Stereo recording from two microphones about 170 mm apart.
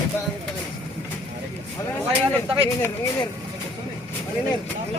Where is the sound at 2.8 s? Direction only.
20° left (ahead or behind).